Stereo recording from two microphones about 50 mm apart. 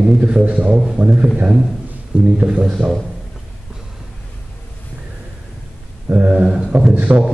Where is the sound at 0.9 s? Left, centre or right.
Right.